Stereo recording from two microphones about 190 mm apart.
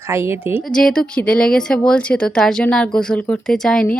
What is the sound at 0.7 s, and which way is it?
A woman's voice, 5° left (ahead or behind).